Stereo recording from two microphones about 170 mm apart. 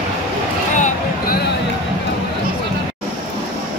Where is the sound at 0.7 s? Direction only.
45° left (ahead or behind).